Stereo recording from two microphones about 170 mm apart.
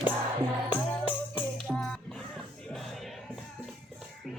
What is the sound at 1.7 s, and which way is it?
Music, centre (ahead or behind).